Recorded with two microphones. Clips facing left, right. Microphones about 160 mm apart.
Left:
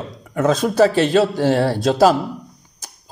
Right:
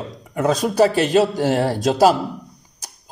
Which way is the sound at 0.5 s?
40° right (ahead or behind).